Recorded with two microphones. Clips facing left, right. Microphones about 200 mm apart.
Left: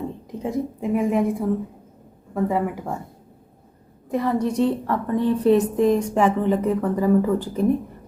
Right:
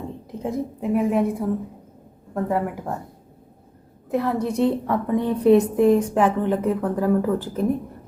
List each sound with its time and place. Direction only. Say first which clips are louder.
0.3 s speech: left 1 dB; centre (ahead or behind)
4.1 s a woman's voice: left 1 dB; 10° right (ahead or behind)